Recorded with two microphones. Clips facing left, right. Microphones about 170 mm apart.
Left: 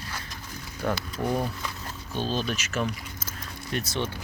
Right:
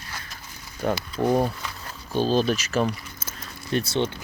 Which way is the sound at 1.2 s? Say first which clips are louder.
Right 6 dB; 35° right (ahead or behind).